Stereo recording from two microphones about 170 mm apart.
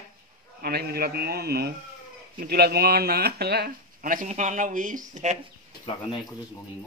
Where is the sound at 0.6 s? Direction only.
70° right (ahead or behind); by 5.4 s 45° right (ahead or behind).